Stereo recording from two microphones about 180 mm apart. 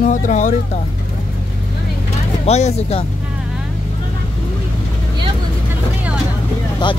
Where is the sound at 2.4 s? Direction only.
35° left (ahead or behind).